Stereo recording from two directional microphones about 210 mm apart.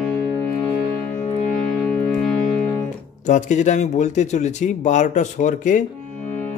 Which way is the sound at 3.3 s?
35° left (ahead or behind).